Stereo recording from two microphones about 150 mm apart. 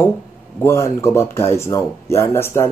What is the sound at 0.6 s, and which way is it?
Speech, 20° left (ahead or behind).